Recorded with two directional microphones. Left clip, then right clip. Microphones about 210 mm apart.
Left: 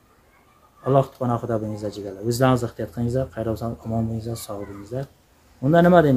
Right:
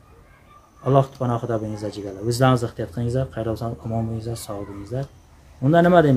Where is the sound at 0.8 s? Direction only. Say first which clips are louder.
Even; 10° right (ahead or behind).